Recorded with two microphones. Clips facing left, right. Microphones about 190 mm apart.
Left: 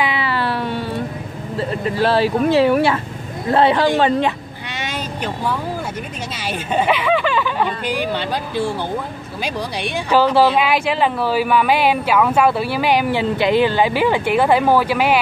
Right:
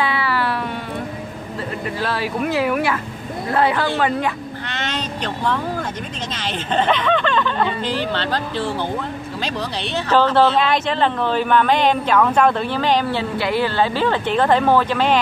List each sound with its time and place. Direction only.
0.0 s cat: 20° left (ahead or behind)
2.0 s speech: 30° left (ahead or behind)
4.6 s vehicle: 10° left (ahead or behind)
6.4 s a woman's voice: 10° left (ahead or behind)